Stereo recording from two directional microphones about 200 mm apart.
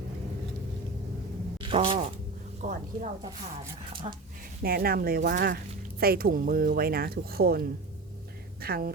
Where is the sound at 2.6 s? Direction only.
40° right (ahead or behind).